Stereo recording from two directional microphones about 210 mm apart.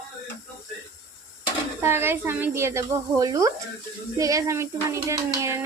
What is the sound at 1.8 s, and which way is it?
Speech, 10° right (ahead or behind).